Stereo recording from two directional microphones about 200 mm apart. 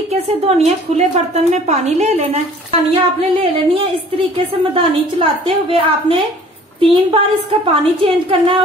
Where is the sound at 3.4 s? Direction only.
30° right (ahead or behind).